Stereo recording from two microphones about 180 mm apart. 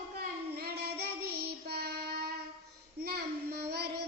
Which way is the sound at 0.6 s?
65° right (ahead or behind).